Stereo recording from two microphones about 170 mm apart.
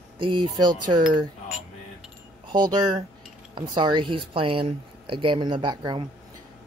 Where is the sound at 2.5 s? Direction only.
25° right (ahead or behind).